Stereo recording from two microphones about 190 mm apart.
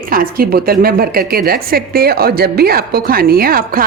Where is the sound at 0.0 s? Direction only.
50° right (ahead or behind).